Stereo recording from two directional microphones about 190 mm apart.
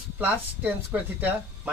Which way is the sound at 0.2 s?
10° right (ahead or behind).